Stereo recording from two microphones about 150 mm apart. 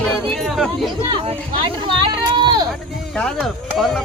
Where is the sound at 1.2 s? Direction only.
35° right (ahead or behind).